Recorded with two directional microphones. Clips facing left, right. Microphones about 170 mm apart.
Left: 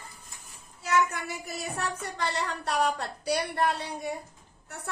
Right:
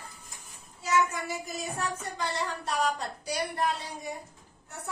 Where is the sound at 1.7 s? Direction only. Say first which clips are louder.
Left 1 dB; 65° left (ahead or behind).